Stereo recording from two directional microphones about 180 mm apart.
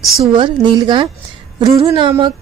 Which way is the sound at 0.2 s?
25° right (ahead or behind).